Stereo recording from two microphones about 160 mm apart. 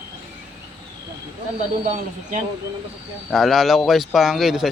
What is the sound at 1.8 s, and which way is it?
Speech, 50° right (ahead or behind).